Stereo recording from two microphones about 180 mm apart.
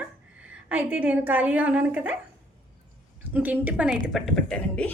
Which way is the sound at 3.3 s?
10° right (ahead or behind).